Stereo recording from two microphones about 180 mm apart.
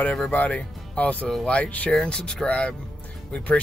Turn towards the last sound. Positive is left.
turn(degrees=5)  # may be behind; listen again after turning